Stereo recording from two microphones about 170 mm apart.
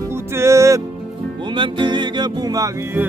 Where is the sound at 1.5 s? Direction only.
25° right (ahead or behind).